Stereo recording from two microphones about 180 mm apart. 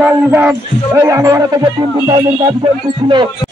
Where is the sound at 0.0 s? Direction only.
10° right (ahead or behind).